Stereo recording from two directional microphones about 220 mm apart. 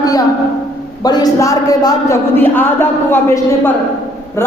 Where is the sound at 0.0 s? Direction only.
15° left (ahead or behind).